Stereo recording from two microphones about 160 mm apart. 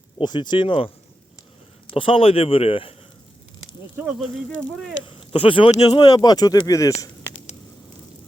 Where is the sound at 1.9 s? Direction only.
35° left (ahead or behind).